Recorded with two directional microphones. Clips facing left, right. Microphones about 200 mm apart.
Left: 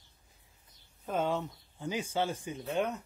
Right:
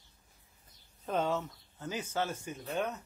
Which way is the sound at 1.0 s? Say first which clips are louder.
Even; 10° left (ahead or behind).